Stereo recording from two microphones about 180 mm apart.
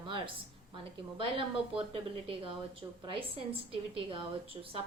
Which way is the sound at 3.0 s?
30° right (ahead or behind).